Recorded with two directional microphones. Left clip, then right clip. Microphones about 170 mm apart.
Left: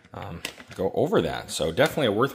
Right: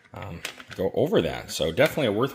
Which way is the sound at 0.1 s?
Centre (ahead or behind).